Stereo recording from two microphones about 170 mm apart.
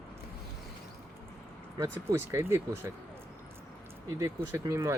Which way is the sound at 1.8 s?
15° right (ahead or behind).